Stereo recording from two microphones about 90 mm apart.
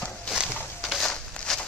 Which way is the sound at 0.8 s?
5° left (ahead or behind).